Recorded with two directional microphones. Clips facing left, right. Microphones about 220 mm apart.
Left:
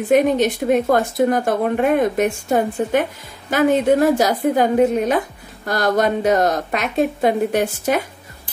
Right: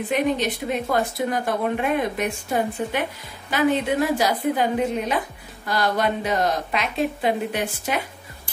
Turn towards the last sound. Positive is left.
turn(degrees=45)  # may be behind; listen again after turning